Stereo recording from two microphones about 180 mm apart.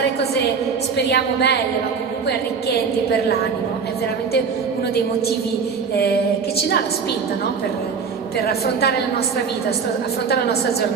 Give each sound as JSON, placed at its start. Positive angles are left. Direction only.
{"t": 0.0, "sound": "a sound", "side_deg": 65}
{"t": 0.9, "sound": "a woman's voice", "side_deg": 65}
{"t": 8.4, "sound": "a woman's voice", "side_deg": 60}